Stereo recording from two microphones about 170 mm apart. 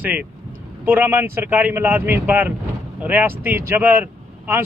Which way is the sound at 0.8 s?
10° right (ahead or behind).